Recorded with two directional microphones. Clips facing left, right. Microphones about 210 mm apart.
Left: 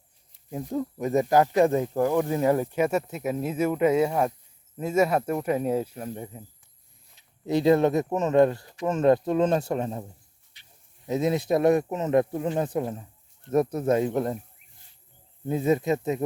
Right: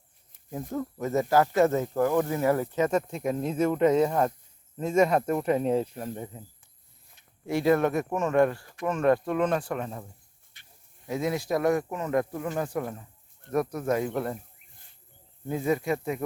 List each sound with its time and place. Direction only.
0.7 s speech: 15° left (ahead or behind)
7.4 s speech: 20° left (ahead or behind)
10.5 s goat: 50° right (ahead or behind)
11.0 s speech: 20° left (ahead or behind)
15.4 s speech: 25° left (ahead or behind)